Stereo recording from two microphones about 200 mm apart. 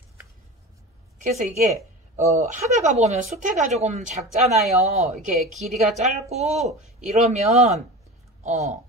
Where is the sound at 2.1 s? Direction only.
35° right (ahead or behind).